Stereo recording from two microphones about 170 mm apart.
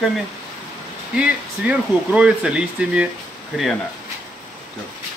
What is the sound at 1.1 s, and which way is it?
Speech, 5° right (ahead or behind).